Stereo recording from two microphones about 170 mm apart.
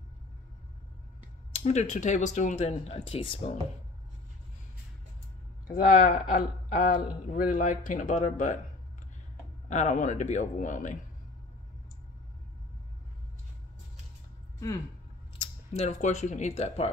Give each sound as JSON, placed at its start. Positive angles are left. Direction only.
{"t": 1.5, "sound": "speech", "side_deg": 40}
{"t": 5.8, "sound": "speech", "side_deg": 50}
{"t": 9.7, "sound": "speech", "side_deg": 45}
{"t": 15.7, "sound": "speech", "side_deg": 40}